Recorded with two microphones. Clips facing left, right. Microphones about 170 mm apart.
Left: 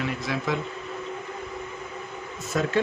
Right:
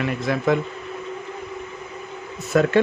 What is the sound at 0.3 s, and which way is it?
Speech, 55° right (ahead or behind).